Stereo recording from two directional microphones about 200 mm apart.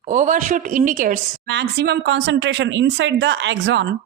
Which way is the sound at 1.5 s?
55° right (ahead or behind).